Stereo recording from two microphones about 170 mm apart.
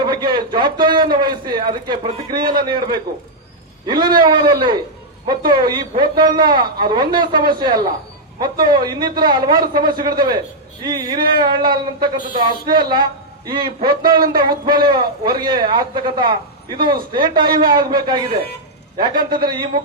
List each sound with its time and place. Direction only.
0.0 s a sound: 25° right (ahead or behind)
2.3 s speech: 25° right (ahead or behind)
11.3 s speech: 25° right (ahead or behind)